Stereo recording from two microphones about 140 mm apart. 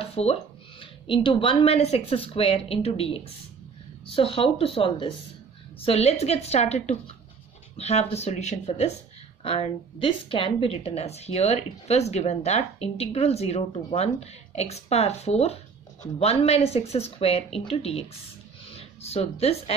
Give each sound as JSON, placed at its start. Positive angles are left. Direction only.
{"t": 0.0, "sound": "a woman's voice", "side_deg": 45}